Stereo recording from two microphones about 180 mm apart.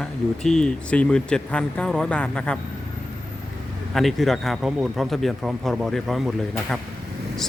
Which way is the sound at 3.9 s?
Centre (ahead or behind).